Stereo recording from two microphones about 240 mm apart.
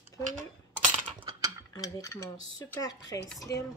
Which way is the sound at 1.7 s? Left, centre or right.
Centre.